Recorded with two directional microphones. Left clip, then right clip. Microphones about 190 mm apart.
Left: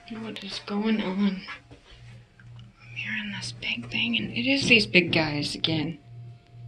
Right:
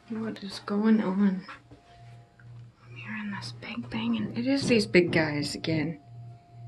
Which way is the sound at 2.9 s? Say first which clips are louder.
Left 6 dB; 25° right (ahead or behind).